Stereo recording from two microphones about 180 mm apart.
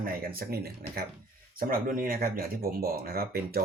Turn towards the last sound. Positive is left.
turn(degrees=-55)  # may be behind; listen again after turning